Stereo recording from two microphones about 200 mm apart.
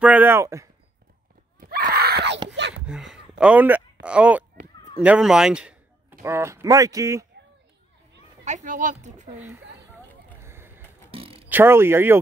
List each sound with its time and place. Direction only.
0.0 s speech: 10° right (ahead or behind)
1.6 s screaming: 45° right (ahead or behind)
2.5 s a sound: 60° right (ahead or behind)
2.9 s a man's voice: 5° right (ahead or behind)
8.5 s speech: 40° right (ahead or behind)
10.4 s skateboard: 10° right (ahead or behind)
11.1 s a sound: 30° right (ahead or behind)
11.4 s speech: 10° right (ahead or behind)